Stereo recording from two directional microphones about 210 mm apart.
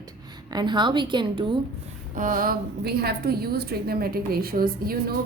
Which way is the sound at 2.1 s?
40° right (ahead or behind).